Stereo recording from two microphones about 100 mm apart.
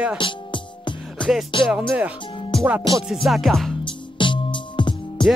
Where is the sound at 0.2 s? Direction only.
55° left (ahead or behind).